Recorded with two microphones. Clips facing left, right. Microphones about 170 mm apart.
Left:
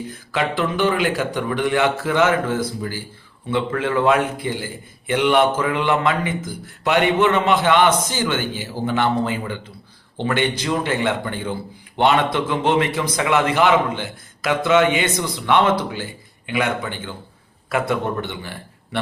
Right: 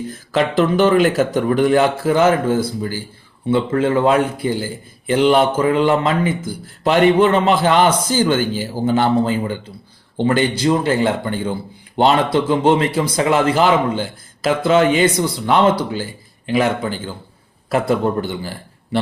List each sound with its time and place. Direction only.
0.3 s a man's voice: 40° right (ahead or behind)